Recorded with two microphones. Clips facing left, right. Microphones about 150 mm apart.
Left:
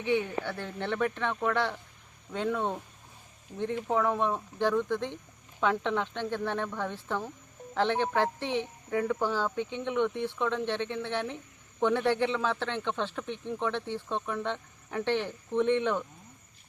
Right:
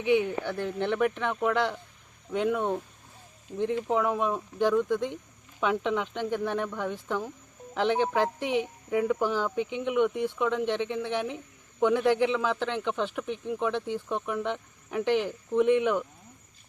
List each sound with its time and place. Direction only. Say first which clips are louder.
0.0 s speech: right 4 dB; 15° right (ahead or behind)
3.9 s speech: left 1 dB; 10° right (ahead or behind)